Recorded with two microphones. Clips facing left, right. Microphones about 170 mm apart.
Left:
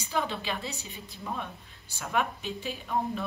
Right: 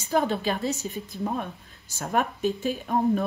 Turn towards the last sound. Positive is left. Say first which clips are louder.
# right 8 dB
turn(degrees=-45)  # may be behind; listen again after turning